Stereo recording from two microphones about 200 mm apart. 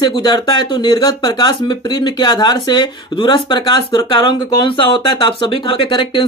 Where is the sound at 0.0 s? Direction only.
20° left (ahead or behind).